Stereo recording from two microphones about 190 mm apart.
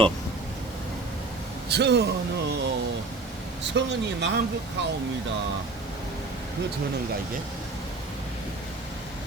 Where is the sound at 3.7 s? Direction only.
65° right (ahead or behind).